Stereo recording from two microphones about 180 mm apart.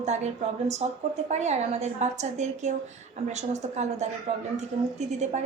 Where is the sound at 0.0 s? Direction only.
40° right (ahead or behind).